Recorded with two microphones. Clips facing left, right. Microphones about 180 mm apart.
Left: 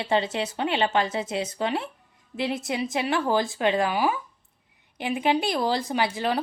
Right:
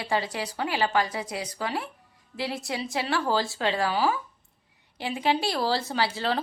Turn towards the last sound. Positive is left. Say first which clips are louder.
# left 2 dB
turn(degrees=15)  # may be behind; listen again after turning